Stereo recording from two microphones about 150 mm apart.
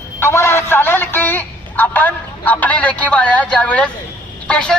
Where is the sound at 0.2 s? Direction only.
15° left (ahead or behind).